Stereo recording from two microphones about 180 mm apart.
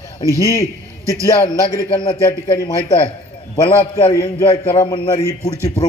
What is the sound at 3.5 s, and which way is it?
A man's voice, 30° left (ahead or behind).